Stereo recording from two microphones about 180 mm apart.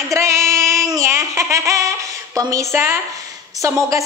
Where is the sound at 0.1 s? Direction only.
15° right (ahead or behind).